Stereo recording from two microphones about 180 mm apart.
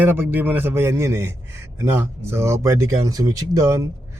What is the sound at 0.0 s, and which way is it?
A man's voice, 10° right (ahead or behind).